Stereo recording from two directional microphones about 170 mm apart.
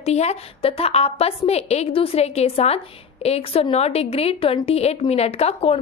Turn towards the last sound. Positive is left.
turn(degrees=35)  # may be behind; listen again after turning